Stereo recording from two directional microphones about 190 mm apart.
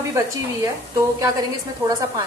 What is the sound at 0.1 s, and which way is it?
A woman's voice, 15° right (ahead or behind).